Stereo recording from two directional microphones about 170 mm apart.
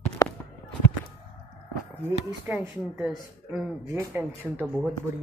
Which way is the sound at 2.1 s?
10° right (ahead or behind).